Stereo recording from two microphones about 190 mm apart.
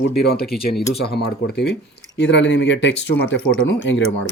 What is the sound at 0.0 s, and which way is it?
Speech, 55° left (ahead or behind).